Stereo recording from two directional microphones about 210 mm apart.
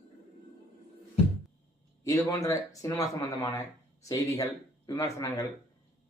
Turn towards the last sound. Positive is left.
turn(degrees=15)  # may be behind; listen again after turning